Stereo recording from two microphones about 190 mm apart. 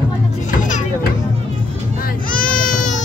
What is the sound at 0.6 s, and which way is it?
Music, 40° left (ahead or behind).